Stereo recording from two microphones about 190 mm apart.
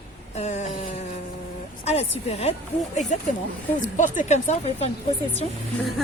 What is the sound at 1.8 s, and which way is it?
Speech, 35° left (ahead or behind).